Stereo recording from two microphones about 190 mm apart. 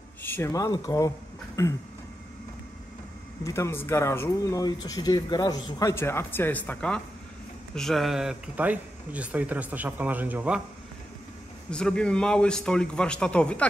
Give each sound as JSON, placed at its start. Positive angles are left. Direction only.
{"t": 0.2, "sound": "speech", "side_deg": 15}
{"t": 3.4, "sound": "speech", "side_deg": 15}
{"t": 11.7, "sound": "a man's voice", "side_deg": 5}